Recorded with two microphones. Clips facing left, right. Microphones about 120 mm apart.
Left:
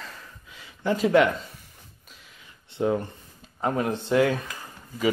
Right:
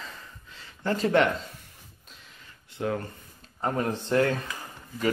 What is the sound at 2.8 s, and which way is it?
Speech, 20° left (ahead or behind).